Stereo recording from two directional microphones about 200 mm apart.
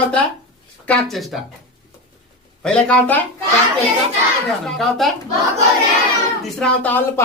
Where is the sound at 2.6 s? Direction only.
5° left (ahead or behind).